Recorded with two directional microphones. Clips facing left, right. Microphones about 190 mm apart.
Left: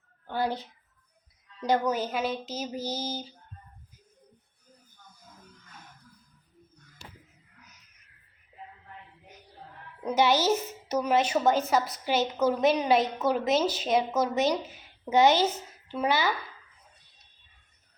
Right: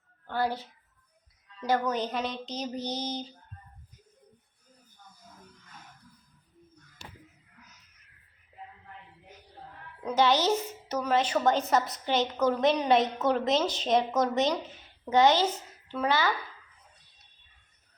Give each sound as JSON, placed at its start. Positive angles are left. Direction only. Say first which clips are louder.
{"t": 0.3, "sound": "a woman's voice", "louder": "even", "side_deg": 15}
{"t": 10.0, "sound": "a woman's voice", "louder": "left 1 dB", "side_deg": 10}